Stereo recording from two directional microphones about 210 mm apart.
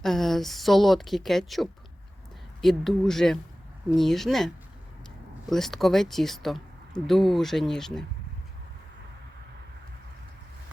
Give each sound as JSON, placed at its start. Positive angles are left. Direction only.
{"t": 0.0, "sound": "speech", "side_deg": 0}